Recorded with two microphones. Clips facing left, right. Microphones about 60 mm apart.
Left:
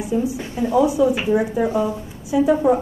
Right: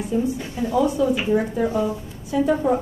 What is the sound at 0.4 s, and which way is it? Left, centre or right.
Speech, left.